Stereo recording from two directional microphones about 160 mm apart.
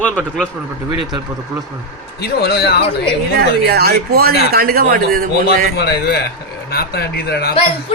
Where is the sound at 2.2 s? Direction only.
90° left.